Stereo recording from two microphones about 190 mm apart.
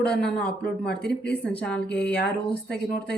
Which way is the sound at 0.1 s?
5° left (ahead or behind).